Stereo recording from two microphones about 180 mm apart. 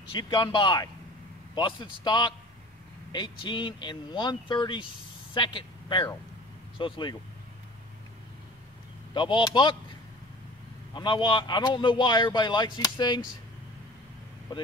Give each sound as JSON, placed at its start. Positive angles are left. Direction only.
{"t": 0.1, "sound": "speech", "side_deg": 25}
{"t": 9.1, "sound": "speech", "side_deg": 25}
{"t": 11.0, "sound": "speech", "side_deg": 25}